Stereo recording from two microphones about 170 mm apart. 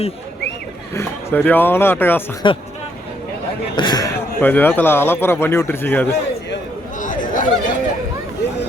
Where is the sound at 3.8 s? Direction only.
25° left (ahead or behind).